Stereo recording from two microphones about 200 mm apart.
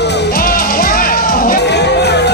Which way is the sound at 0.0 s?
45° left (ahead or behind).